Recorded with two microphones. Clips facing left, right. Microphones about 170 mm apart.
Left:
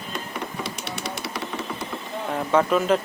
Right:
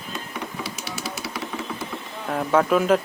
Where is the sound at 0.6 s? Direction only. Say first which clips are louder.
Left 1 dB; centre (ahead or behind).